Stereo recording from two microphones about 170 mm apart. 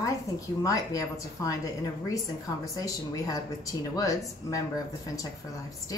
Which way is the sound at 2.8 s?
20° left (ahead or behind).